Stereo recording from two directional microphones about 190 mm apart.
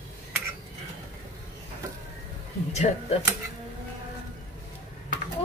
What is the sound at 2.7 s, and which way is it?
Speech, 35° left (ahead or behind).